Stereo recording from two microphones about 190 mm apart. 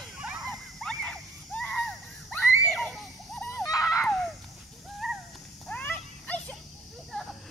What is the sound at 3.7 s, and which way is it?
Screaming, 15° left (ahead or behind).